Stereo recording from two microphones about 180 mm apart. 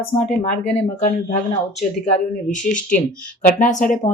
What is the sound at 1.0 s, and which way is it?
Speech, 50° left (ahead or behind).